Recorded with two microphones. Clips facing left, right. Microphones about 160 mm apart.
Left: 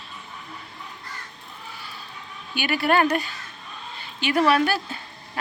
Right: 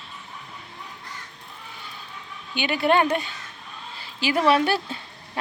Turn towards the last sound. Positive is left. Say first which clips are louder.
# right 1 dB
turn(degrees=-25)  # may be behind; listen again after turning